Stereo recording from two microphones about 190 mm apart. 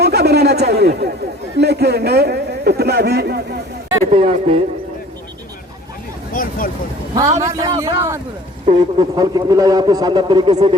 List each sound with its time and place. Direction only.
0.0 s a sound: 60° right (ahead or behind)
1.5 s a man's voice: 60° right (ahead or behind)
4.1 s speech: 30° right (ahead or behind)
6.3 s vehicle: 50° left (ahead or behind)
7.1 s a man's voice: 20° right (ahead or behind)